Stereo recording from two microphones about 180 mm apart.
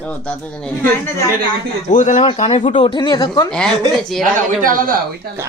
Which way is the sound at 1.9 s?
45° left (ahead or behind).